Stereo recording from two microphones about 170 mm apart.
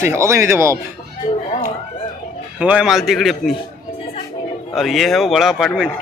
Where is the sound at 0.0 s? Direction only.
15° right (ahead or behind).